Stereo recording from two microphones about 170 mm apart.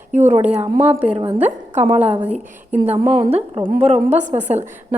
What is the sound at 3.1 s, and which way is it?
A woman's voice, 35° right (ahead or behind).